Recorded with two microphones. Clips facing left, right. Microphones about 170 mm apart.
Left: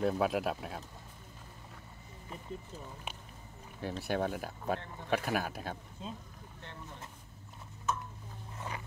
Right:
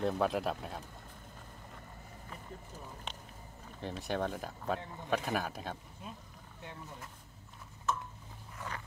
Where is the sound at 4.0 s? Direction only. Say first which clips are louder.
Left 2 dB; 5° left (ahead or behind).